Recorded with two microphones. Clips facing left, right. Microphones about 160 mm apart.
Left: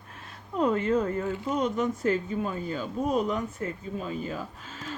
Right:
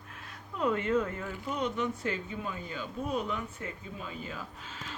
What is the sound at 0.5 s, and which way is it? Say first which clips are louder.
Speech: left 4 dB; 35° left (ahead or behind).